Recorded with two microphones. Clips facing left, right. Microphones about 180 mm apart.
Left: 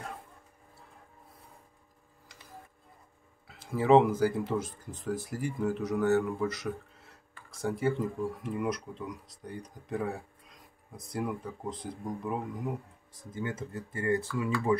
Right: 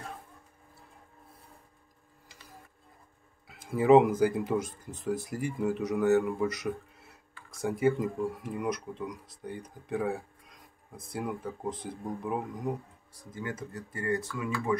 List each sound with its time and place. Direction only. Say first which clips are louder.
3.4 s speech: right 2 dB; 10° right (ahead or behind)
8.5 s speech: even; centre (ahead or behind)
13.3 s speech: left 2 dB; 25° left (ahead or behind)